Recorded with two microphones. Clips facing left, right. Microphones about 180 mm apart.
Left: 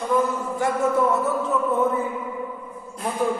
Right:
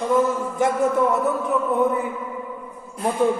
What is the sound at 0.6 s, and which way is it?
Speech, 20° right (ahead or behind).